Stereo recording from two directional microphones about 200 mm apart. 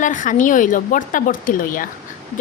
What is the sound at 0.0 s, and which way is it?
Speech, 40° left (ahead or behind).